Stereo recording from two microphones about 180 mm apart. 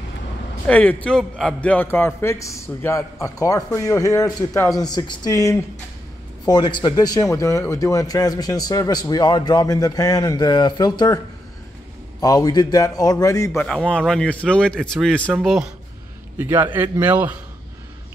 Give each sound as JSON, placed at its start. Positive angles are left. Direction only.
{"t": 0.7, "sound": "a man's voice", "side_deg": 10}
{"t": 12.2, "sound": "a man's voice", "side_deg": 20}